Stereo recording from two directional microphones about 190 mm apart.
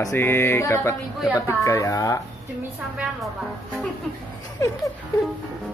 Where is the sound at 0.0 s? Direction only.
15° left (ahead or behind).